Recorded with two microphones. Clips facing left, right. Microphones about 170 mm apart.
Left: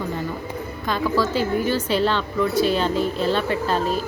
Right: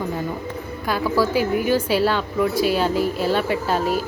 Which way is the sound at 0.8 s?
10° right (ahead or behind).